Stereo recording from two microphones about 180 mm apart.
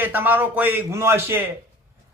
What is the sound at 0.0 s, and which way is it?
Speech, 10° right (ahead or behind).